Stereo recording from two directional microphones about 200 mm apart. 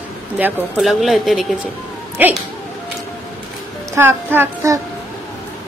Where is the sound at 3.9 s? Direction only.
10° right (ahead or behind).